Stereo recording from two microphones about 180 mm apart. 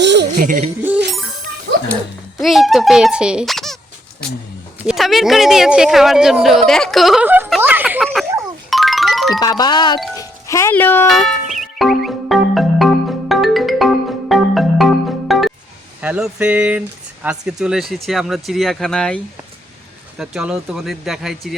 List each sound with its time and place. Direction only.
0.0 s a sound: 75° right (ahead or behind)
0.3 s speech: 45° right (ahead or behind)
0.8 s music: 10° right (ahead or behind)
2.4 s speech: centre (ahead or behind)
4.8 s speech: 5° right (ahead or behind)
7.6 s a sound: 10° right (ahead or behind)
8.7 s music: centre (ahead or behind)
9.4 s speech: 20° left (ahead or behind)
11.0 s music: centre (ahead or behind)
16.0 s speech: 5° right (ahead or behind)